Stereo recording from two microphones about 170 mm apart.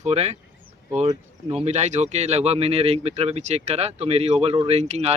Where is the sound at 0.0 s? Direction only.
40° right (ahead or behind).